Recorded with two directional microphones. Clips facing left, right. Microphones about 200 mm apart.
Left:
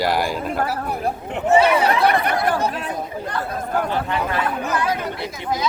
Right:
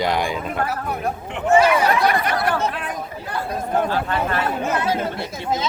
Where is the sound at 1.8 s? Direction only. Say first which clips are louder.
Left 1 dB; 30° left (ahead or behind).